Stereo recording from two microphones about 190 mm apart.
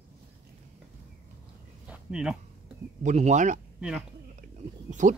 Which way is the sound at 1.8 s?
5° right (ahead or behind).